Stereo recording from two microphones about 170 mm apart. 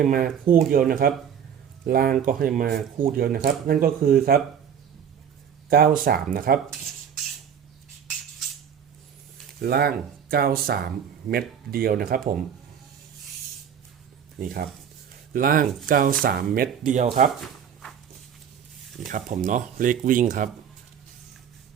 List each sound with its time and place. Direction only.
0.0 s speech: 55° right (ahead or behind)
5.6 s speech: 60° right (ahead or behind)
9.6 s speech: 65° right (ahead or behind)
14.4 s speech: 60° right (ahead or behind)
19.0 s speech: 50° right (ahead or behind)